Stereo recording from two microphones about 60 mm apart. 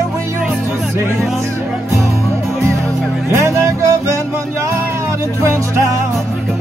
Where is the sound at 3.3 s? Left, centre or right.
Right.